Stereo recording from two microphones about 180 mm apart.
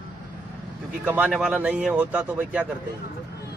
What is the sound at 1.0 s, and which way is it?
A man's voice, 5° right (ahead or behind).